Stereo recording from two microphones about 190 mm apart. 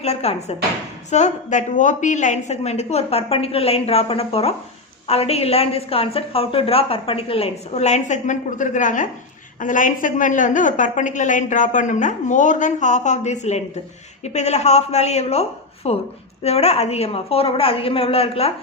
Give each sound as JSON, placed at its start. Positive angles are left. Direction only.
{"t": 0.0, "sound": "a woman's voice", "side_deg": 35}